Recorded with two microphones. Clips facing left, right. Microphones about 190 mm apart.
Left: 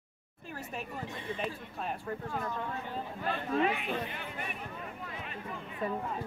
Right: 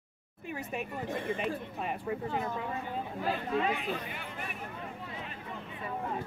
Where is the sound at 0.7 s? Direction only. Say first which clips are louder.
Right 5 dB; 50° right (ahead or behind).